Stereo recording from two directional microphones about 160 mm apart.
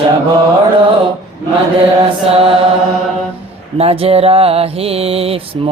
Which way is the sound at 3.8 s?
35° right (ahead or behind).